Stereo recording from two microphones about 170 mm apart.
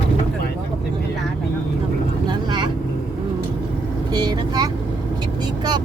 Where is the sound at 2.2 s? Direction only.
25° right (ahead or behind).